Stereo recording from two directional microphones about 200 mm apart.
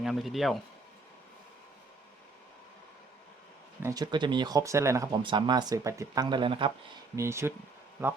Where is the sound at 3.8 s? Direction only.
20° right (ahead or behind).